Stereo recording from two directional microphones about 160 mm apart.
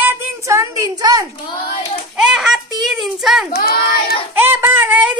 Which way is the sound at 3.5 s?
75° left (ahead or behind).